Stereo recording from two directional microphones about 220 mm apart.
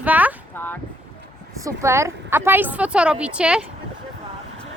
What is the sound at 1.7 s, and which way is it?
Speech, 15° right (ahead or behind).